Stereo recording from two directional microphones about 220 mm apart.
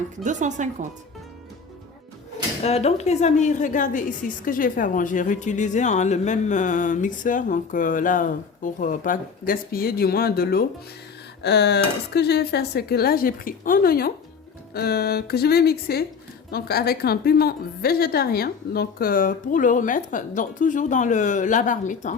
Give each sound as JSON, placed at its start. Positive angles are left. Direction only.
{"t": 0.3, "sound": "speech", "side_deg": -35}
{"t": 2.6, "sound": "a woman's voice", "side_deg": 30}